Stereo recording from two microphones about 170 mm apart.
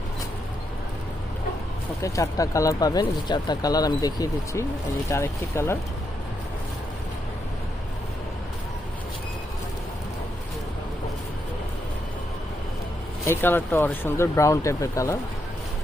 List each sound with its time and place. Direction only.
2.0 s speech: 20° left (ahead or behind)
13.2 s speech: 15° left (ahead or behind)